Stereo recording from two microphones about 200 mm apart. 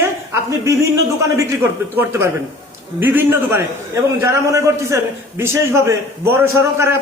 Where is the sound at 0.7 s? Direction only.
15° right (ahead or behind).